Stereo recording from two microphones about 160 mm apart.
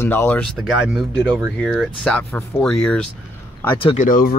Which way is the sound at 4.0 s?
60° left (ahead or behind).